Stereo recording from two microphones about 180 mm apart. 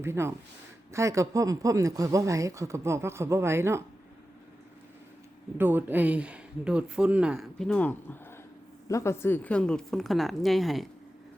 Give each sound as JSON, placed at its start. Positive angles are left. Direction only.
{"t": 0.0, "sound": "speech", "side_deg": -15}
{"t": 5.5, "sound": "speech", "side_deg": -10}